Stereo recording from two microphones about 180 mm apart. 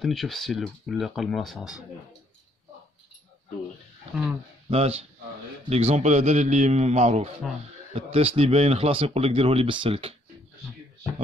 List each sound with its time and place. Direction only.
0.0 s speech: centre (ahead or behind)
4.6 s speech: 35° right (ahead or behind)